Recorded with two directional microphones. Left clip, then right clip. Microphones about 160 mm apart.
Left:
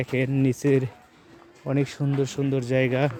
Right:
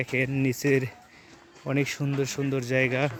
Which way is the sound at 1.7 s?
10° left (ahead or behind).